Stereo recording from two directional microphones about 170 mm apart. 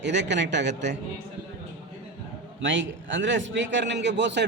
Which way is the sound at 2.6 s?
90° right.